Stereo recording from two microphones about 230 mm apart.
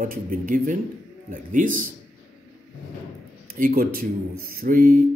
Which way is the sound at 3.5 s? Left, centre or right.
Right.